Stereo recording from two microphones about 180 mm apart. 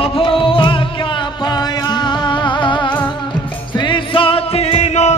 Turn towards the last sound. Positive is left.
turn(degrees=35)  # may be behind; listen again after turning